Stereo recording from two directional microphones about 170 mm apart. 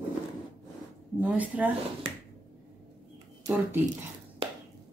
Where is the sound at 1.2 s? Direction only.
10° right (ahead or behind).